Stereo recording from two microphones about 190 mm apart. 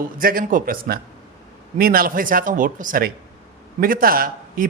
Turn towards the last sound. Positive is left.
turn(degrees=-50)  # may be behind; listen again after turning